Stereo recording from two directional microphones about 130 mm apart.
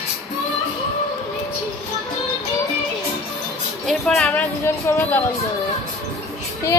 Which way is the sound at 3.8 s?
Centre (ahead or behind).